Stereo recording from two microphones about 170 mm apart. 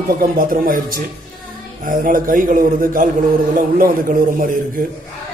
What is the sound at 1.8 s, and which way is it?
A man's voice, 55° right (ahead or behind).